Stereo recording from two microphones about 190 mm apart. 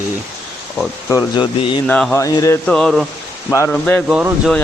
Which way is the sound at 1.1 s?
20° left (ahead or behind).